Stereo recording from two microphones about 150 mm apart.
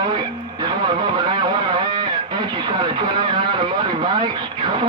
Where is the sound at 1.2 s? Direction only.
30° right (ahead or behind).